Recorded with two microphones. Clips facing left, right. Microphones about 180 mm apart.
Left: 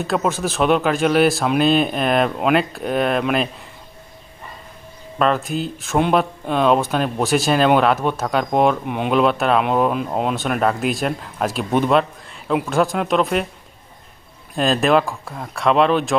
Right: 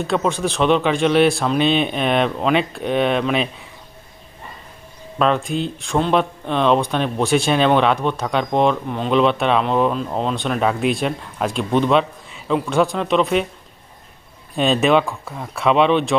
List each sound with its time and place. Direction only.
0.0 s speech: 5° left (ahead or behind)
5.2 s speech: centre (ahead or behind)
14.5 s speech: centre (ahead or behind)